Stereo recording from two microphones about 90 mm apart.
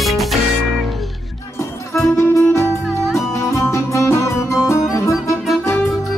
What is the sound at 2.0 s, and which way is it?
Music, 35° left (ahead or behind).